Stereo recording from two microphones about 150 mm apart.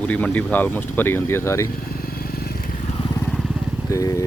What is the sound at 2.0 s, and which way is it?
Motorcycle, 85° left.